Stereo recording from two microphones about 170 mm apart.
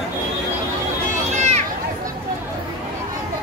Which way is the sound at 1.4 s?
40° right (ahead or behind).